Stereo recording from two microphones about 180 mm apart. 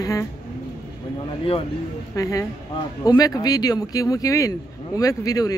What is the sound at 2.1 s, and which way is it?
Speech, 20° left (ahead or behind).